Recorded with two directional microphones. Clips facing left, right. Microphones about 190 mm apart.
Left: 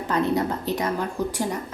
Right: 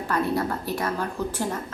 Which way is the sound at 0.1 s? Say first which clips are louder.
Left 2 dB; 20° left (ahead or behind).